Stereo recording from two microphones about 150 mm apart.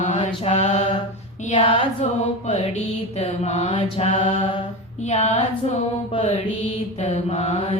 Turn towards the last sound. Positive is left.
turn(degrees=40)  # may be behind; listen again after turning